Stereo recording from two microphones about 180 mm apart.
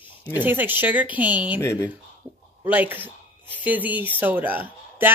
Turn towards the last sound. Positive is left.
turn(degrees=-10)  # may be behind; listen again after turning